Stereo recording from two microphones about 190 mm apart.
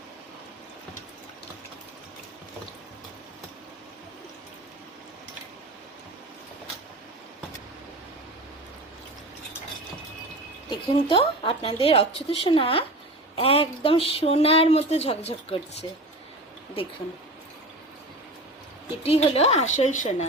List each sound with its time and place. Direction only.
10.7 s a woman's voice: 25° left (ahead or behind)
19.0 s speech: 30° left (ahead or behind)